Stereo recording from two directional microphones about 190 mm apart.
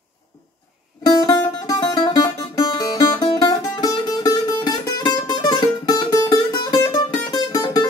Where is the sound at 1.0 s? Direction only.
20° left (ahead or behind).